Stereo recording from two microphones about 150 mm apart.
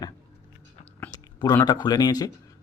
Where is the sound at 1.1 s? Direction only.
25° left (ahead or behind).